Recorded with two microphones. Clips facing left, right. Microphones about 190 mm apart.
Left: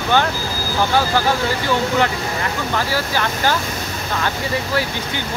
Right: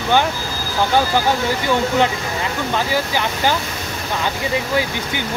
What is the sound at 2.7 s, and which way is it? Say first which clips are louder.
Speech: right 2 dB; 15° right (ahead or behind).